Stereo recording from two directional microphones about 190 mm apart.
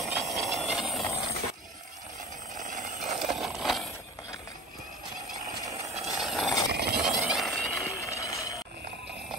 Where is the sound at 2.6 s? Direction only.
40° right (ahead or behind).